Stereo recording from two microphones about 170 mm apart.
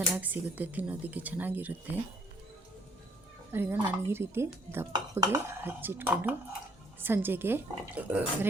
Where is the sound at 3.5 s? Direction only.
15° right (ahead or behind).